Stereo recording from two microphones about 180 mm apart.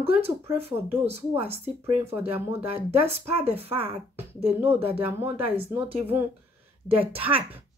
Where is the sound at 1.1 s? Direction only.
35° right (ahead or behind).